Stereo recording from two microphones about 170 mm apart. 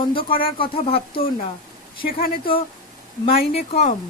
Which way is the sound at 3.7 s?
40° left (ahead or behind).